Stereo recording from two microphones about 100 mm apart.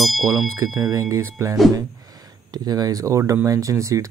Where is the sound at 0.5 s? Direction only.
30° right (ahead or behind).